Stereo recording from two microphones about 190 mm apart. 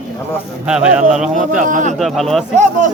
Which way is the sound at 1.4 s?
40° right (ahead or behind).